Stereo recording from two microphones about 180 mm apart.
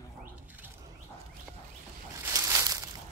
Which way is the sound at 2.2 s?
15° right (ahead or behind).